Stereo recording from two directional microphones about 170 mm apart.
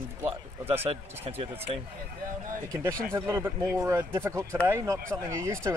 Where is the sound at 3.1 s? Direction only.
15° right (ahead or behind).